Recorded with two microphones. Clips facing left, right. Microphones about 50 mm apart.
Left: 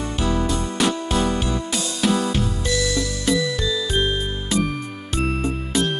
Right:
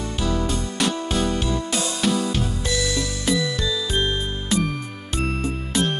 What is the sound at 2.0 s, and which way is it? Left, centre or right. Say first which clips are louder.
Music: left 3 dB; centre.